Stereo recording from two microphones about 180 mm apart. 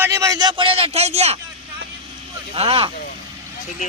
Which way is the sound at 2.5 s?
30° right (ahead or behind).